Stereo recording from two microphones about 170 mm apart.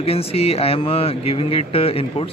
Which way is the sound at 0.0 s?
35° left (ahead or behind).